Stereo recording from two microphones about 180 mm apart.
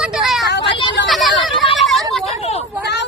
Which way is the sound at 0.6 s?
30° left (ahead or behind).